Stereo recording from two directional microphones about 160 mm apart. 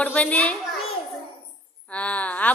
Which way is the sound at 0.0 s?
10° left (ahead or behind).